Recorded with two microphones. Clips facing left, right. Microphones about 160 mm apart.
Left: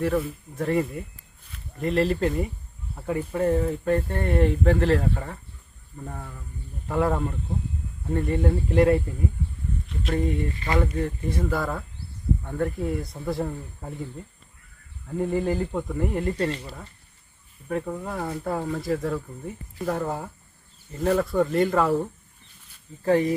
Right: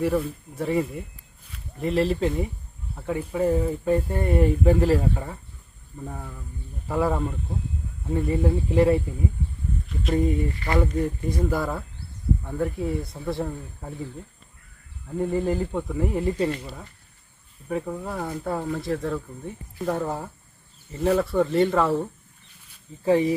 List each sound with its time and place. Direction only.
0.0 s speech: centre (ahead or behind)
10.5 s speech: 20° left (ahead or behind)
11.3 s speech: 10° right (ahead or behind)
15.2 s speech: centre (ahead or behind)